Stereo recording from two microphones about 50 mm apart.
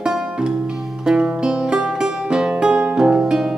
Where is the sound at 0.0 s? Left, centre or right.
Centre.